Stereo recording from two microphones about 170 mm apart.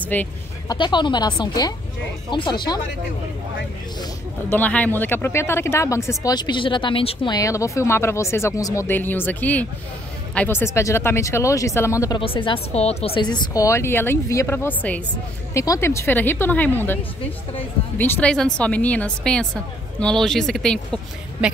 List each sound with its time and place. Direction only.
0.0 s speech: 10° left (ahead or behind)
0.7 s a woman's voice: 25° left (ahead or behind)
4.5 s speech: 10° left (ahead or behind); by 7.3 s 30° left (ahead or behind)
7.3 s speech: 20° left (ahead or behind)
12.2 s a woman's voice: 30° left (ahead or behind); by 21.0 s 5° left (ahead or behind)